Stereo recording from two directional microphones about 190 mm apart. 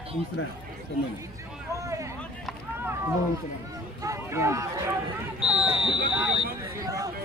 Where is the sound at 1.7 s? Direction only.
15° right (ahead or behind).